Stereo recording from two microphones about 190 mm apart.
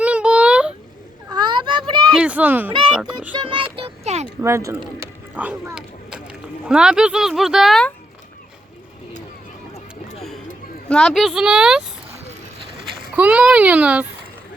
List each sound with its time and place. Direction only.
0.0 s a sound: 5° right (ahead or behind)
1.3 s children playing: 25° right (ahead or behind)
2.1 s speech: 5° right (ahead or behind)
3.3 s a child's voice: 25° right (ahead or behind)
4.4 s a child's voice: 15° right (ahead or behind); by 7.9 s centre (ahead or behind)
10.8 s speech: 5° left (ahead or behind)
13.1 s a child's voice: 5° right (ahead or behind)